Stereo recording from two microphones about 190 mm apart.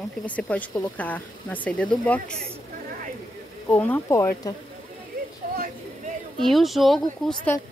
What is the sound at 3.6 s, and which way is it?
Speech, 10° left (ahead or behind).